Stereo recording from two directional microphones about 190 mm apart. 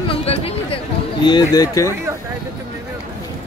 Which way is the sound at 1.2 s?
20° left (ahead or behind).